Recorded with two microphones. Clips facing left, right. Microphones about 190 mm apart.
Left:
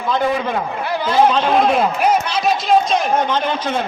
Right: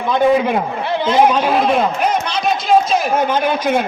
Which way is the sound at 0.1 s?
20° right (ahead or behind).